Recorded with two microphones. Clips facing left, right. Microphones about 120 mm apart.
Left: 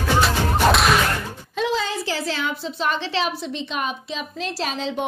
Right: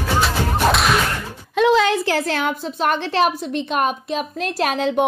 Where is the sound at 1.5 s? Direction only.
70° right (ahead or behind).